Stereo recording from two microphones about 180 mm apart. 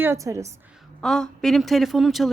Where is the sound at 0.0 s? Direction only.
15° right (ahead or behind).